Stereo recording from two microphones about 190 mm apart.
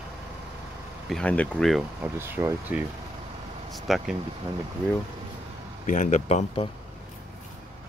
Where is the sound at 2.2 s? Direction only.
10° right (ahead or behind).